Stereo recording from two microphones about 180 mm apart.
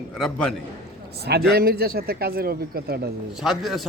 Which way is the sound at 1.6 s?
60° right (ahead or behind).